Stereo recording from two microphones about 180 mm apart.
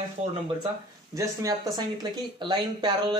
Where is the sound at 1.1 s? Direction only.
20° right (ahead or behind).